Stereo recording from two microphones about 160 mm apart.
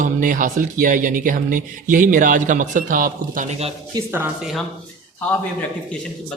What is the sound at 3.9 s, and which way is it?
Speech, 15° right (ahead or behind).